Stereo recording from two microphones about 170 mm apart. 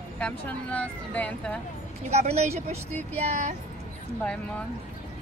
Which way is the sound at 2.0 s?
40° right (ahead or behind).